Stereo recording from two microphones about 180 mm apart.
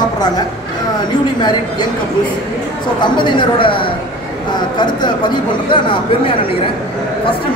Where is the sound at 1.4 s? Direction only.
25° left (ahead or behind).